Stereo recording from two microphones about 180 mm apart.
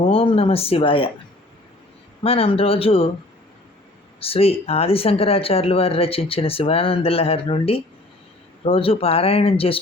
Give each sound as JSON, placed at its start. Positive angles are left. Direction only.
{"t": 0.0, "sound": "speech", "side_deg": 30}
{"t": 2.2, "sound": "speech", "side_deg": 30}
{"t": 4.2, "sound": "speech", "side_deg": 35}